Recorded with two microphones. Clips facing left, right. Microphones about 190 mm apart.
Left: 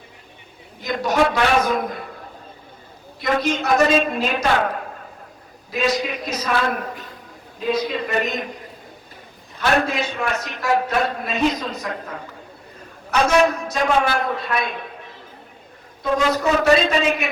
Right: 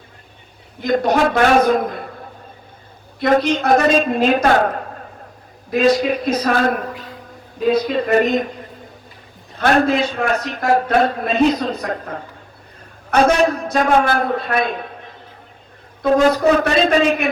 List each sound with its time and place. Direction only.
0.8 s a man's voice: 50° right (ahead or behind)
3.2 s a man's voice: 50° right (ahead or behind)
5.7 s a man's voice: 50° right (ahead or behind)
9.6 s a man's voice: 55° right (ahead or behind)
16.1 s a man's voice: 50° right (ahead or behind)